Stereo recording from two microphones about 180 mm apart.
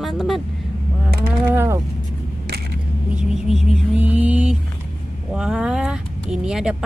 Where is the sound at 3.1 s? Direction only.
Centre (ahead or behind).